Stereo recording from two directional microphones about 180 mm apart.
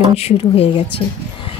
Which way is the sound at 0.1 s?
35° left (ahead or behind).